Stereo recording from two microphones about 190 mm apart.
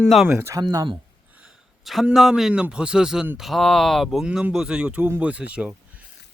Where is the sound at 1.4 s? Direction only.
Centre (ahead or behind).